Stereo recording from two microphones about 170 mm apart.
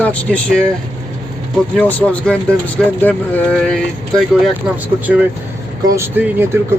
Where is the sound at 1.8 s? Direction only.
10° left (ahead or behind).